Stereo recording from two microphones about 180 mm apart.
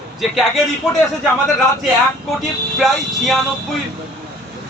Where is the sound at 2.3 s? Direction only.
Centre (ahead or behind).